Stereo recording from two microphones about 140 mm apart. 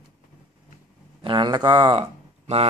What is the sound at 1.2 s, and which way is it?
Speech, 35° right (ahead or behind).